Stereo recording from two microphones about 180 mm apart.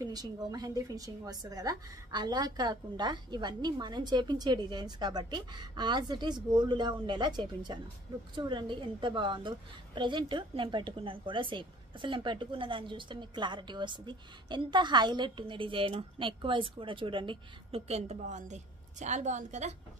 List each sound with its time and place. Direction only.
0.0 s speech: 20° right (ahead or behind); by 19.7 s 40° right (ahead or behind)